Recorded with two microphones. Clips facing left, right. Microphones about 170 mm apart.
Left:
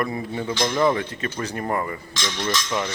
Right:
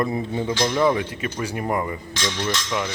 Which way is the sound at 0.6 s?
5° right (ahead or behind).